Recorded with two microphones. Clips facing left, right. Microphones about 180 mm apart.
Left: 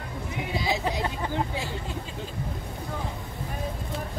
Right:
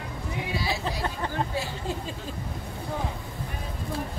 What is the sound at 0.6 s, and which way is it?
Hubbub, 20° left (ahead or behind).